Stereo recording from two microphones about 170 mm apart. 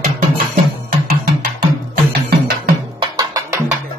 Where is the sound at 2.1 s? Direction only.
70° right (ahead or behind).